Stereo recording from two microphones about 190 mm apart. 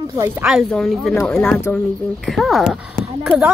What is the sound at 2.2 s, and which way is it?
A woman's voice, centre (ahead or behind).